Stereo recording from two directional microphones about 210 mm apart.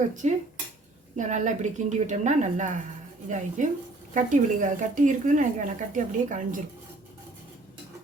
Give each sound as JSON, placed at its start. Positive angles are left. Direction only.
{"t": 0.2, "sound": "speech", "side_deg": -35}